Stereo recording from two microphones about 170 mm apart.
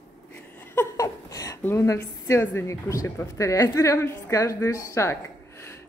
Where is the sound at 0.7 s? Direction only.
20° left (ahead or behind).